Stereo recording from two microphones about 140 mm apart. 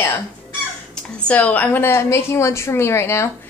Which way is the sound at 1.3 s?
10° left (ahead or behind).